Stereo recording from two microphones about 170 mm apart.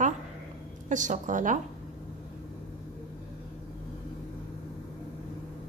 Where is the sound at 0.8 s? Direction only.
45° right (ahead or behind).